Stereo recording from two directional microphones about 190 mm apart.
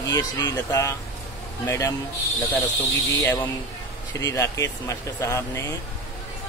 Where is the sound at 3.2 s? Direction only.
15° left (ahead or behind).